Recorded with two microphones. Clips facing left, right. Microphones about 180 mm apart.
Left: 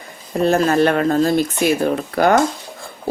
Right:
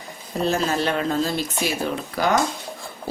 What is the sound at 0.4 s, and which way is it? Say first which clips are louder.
Speech: left 8 dB; 55° left (ahead or behind).